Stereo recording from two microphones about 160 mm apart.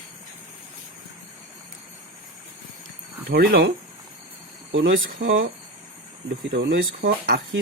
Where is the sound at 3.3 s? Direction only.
75° right (ahead or behind).